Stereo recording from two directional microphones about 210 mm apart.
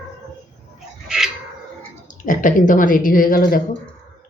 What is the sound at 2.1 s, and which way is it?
Speech, 40° left (ahead or behind).